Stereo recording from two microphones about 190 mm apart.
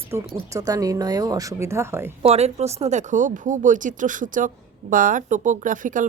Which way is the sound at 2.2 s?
35° right (ahead or behind).